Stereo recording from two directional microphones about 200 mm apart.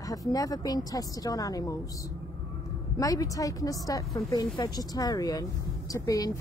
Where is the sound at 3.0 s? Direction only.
15° left (ahead or behind).